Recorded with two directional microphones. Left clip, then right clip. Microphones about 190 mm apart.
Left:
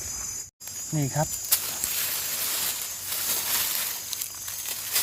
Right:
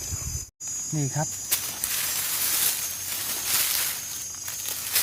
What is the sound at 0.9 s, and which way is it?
Speech, 25° left (ahead or behind).